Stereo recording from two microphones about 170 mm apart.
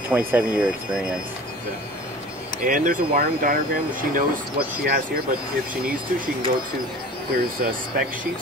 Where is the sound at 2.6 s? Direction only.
55° right (ahead or behind).